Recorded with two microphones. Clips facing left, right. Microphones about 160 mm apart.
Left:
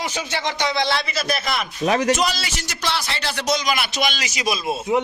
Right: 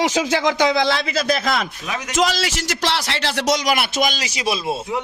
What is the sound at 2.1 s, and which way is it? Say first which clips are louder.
A man's voice: right 4 dB; 90° right.